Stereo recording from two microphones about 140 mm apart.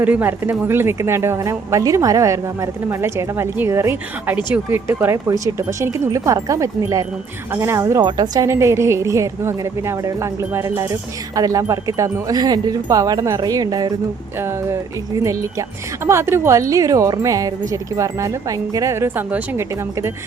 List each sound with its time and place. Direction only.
0.0 s speech: 15° right (ahead or behind)